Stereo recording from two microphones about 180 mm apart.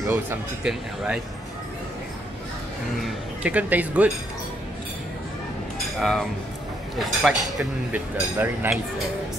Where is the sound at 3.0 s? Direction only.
5° right (ahead or behind).